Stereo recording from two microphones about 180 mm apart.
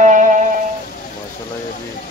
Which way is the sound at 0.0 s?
45° right (ahead or behind).